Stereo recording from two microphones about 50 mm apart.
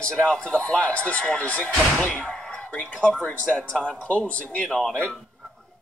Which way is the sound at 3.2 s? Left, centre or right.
Left.